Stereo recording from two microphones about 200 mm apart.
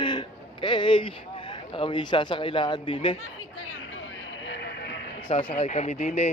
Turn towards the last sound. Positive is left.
turn(degrees=35)  # may be behind; listen again after turning